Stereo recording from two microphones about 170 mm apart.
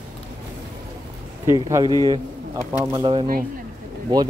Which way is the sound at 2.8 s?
20° right (ahead or behind).